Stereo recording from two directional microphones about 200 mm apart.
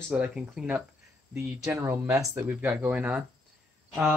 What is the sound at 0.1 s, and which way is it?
Speech, 5° right (ahead or behind).